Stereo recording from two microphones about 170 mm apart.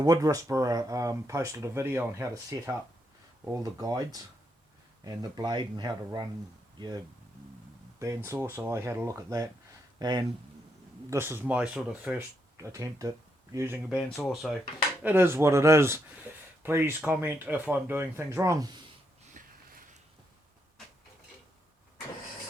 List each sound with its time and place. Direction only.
0.0 s speech: 20° right (ahead or behind)
12.5 s speech: 20° right (ahead or behind)
13.8 s speech: 5° right (ahead or behind)
15.0 s speech: 15° right (ahead or behind)
19.3 s sniff: 50° right (ahead or behind)